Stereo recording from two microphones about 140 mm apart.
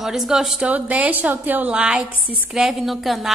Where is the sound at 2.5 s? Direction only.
Centre (ahead or behind).